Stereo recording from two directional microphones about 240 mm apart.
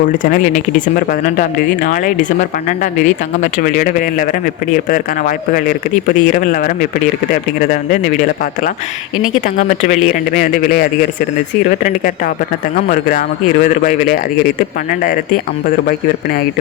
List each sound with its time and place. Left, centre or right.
0.2 s speech: left
9.6 s speech: left